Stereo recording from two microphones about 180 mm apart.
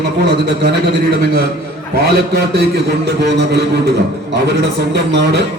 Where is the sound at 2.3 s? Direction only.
65° right (ahead or behind).